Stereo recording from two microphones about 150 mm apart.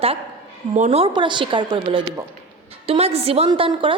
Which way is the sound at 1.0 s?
35° right (ahead or behind).